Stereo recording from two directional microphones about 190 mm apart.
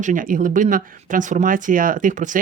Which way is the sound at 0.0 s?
45° right (ahead or behind).